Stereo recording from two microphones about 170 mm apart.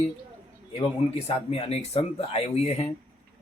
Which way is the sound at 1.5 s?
35° left (ahead or behind).